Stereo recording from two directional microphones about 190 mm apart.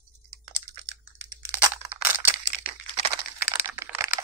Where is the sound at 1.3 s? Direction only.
15° right (ahead or behind).